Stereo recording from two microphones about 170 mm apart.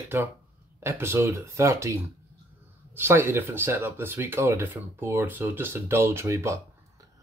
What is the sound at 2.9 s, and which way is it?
Speech, 15° right (ahead or behind).